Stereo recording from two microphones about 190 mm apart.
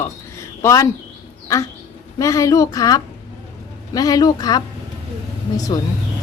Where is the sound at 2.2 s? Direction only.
15° left (ahead or behind).